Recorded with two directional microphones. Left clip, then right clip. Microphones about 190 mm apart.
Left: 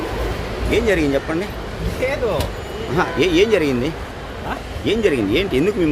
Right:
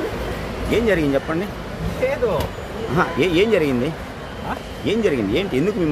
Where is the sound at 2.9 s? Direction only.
5° right (ahead or behind).